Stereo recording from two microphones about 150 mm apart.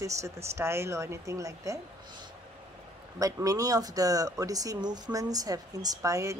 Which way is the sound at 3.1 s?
20° right (ahead or behind).